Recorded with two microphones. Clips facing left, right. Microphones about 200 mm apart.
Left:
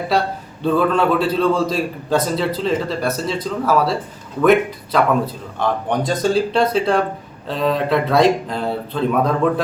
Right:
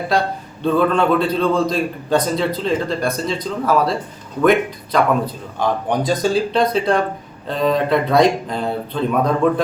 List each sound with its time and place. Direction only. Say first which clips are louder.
0.6 s a man's voice: even; centre (ahead or behind)